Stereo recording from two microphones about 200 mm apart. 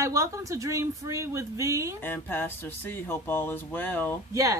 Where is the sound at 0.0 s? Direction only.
15° right (ahead or behind).